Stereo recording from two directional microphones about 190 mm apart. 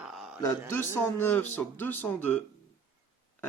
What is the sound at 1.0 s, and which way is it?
Speech, 10° left (ahead or behind).